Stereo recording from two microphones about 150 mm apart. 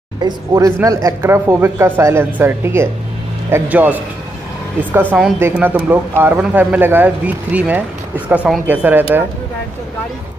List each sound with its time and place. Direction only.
0.2 s speech: 20° right (ahead or behind)
5.1 s speech: 10° right (ahead or behind)